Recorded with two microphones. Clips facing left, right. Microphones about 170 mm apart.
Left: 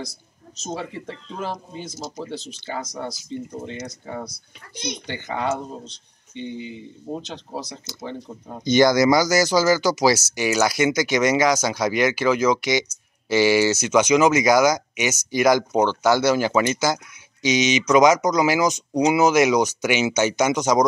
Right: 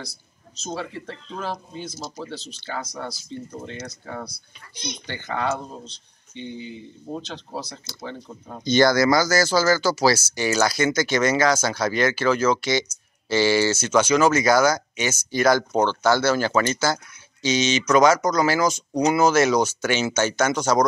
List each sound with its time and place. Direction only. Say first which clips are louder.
0.7 s speech: left 1 dB; 15° left (ahead or behind)
7.1 s speech: left 1 dB; 15° left (ahead or behind)